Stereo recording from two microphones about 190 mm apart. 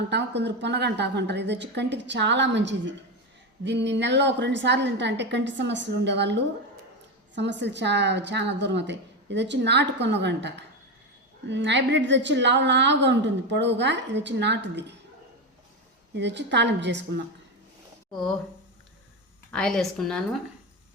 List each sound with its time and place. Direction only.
0.1 s a woman's voice: 65° right (ahead or behind)
16.1 s a woman's voice: 65° right (ahead or behind)
18.1 s a woman's voice: centre (ahead or behind)
19.5 s a woman's voice: 5° left (ahead or behind)